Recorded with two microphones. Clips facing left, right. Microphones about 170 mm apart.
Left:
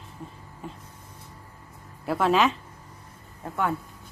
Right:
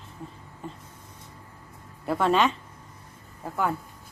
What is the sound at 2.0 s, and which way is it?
Speech, centre (ahead or behind).